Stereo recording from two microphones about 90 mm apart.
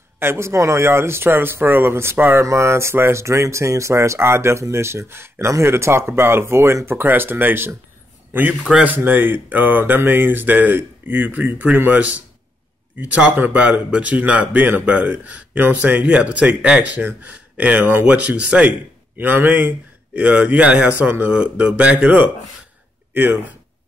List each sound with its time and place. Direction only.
0.2 s speech: 30° right (ahead or behind)